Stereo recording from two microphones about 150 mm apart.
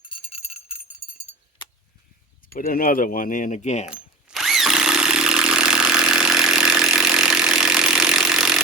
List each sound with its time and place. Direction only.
0.3 s jingle bell: 45° left (ahead or behind)
2.5 s speech: 70° left (ahead or behind); by 3.8 s 50° left (ahead or behind)
3.8 s tools: 5° right (ahead or behind)